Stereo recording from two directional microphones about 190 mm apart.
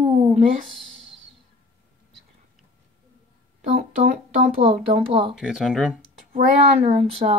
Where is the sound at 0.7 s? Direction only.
Centre (ahead or behind).